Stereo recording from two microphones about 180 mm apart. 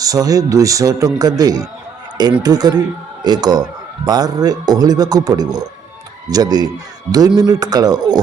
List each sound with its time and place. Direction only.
0.0 s speech: 20° right (ahead or behind)